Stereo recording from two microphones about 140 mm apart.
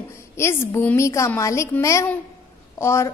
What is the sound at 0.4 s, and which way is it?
A woman's voice, 20° left (ahead or behind).